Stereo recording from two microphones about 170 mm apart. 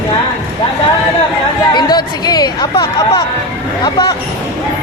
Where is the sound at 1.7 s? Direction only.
25° left (ahead or behind).